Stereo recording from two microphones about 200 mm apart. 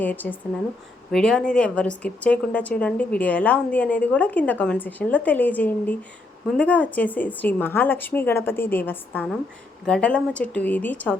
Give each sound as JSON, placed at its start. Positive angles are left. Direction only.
{"t": 0.0, "sound": "a woman's voice", "side_deg": 10}